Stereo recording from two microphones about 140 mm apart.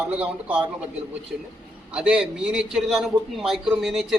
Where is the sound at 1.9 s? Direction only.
5° right (ahead or behind).